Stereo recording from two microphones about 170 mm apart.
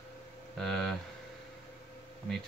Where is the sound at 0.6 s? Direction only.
Centre (ahead or behind).